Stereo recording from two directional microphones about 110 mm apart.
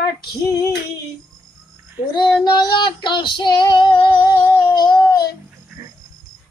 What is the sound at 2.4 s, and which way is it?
Female singing, 40° left (ahead or behind).